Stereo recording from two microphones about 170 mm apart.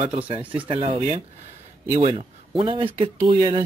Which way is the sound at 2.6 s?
30° right (ahead or behind).